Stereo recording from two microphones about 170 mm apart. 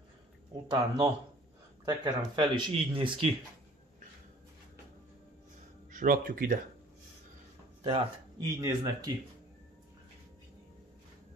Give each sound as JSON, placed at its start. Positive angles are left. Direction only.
{"t": 0.7, "sound": "speech", "side_deg": -25}
{"t": 5.9, "sound": "speech", "side_deg": -50}
{"t": 8.4, "sound": "speech", "side_deg": -20}